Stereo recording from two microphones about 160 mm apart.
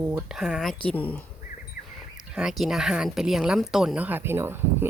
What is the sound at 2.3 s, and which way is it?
Speech, 5° right (ahead or behind).